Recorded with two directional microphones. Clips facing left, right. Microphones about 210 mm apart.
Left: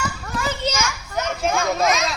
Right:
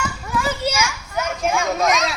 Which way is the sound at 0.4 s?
10° right (ahead or behind).